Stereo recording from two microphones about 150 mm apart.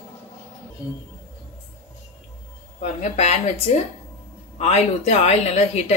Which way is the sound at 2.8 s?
45° left (ahead or behind).